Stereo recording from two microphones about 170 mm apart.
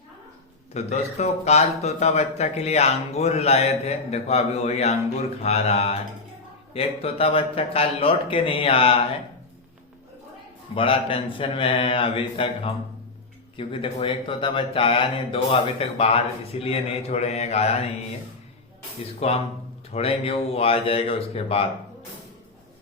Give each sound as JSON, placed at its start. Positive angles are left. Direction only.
{"t": 0.7, "sound": "speech", "side_deg": 40}
{"t": 10.8, "sound": "speech", "side_deg": 30}
{"t": 19.2, "sound": "speech", "side_deg": 35}